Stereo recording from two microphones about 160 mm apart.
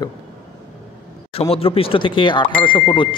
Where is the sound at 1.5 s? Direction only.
35° left (ahead or behind).